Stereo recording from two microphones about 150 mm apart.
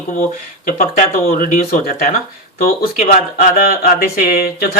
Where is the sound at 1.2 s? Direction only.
75° left (ahead or behind).